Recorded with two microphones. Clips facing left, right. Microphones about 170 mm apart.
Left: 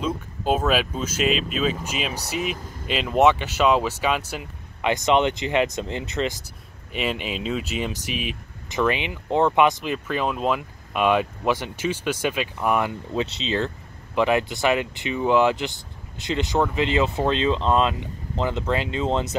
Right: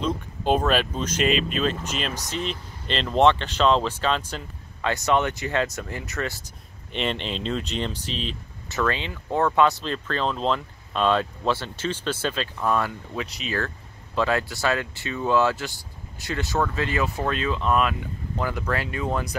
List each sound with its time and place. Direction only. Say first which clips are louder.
0.0 s speech: even; 5° left (ahead or behind)
6.9 s speech: left 1 dB; 5° left (ahead or behind); by 19.3 s 25° left (ahead or behind)